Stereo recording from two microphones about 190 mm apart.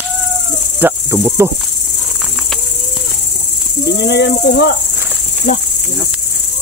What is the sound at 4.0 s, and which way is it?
Speech, 65° left (ahead or behind).